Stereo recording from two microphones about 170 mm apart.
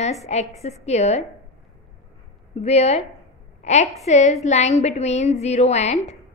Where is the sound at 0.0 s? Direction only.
40° left (ahead or behind).